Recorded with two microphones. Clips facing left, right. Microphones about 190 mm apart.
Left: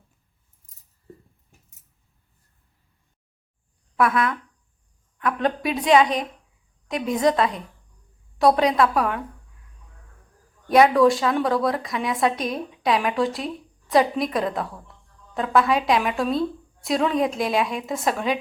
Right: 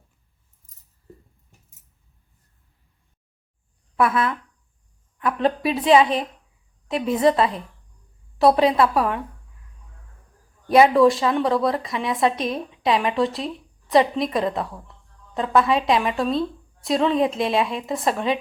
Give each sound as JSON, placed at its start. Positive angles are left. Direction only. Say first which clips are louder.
{"t": 3.9, "sound": "a woman's voice", "louder": "even", "side_deg": 0}
{"t": 10.7, "sound": "a woman's voice", "louder": "right 1 dB", "side_deg": 0}